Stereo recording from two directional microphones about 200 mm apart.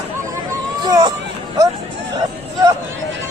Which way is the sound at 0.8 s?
20° right (ahead or behind).